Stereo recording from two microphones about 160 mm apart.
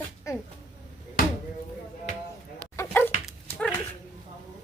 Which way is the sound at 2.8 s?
15° left (ahead or behind).